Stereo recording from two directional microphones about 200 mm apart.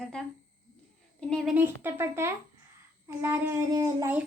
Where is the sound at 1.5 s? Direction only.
10° right (ahead or behind).